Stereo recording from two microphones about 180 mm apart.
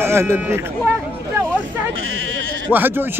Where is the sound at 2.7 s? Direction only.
10° right (ahead or behind).